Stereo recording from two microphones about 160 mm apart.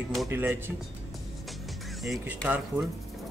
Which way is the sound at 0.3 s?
15° right (ahead or behind).